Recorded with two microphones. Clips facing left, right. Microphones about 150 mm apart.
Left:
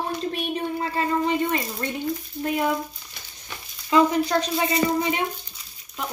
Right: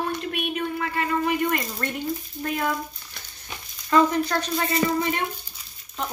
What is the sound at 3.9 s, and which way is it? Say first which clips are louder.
Speech: left 1 dB; 15° left (ahead or behind).